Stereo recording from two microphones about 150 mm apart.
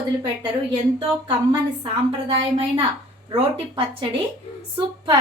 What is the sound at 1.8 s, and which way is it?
A woman's voice, 40° right (ahead or behind).